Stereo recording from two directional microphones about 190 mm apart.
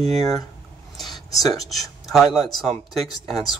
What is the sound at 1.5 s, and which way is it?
Speech, centre (ahead or behind).